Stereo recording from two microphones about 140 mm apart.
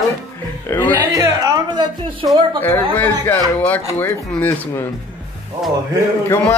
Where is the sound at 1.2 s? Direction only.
25° right (ahead or behind).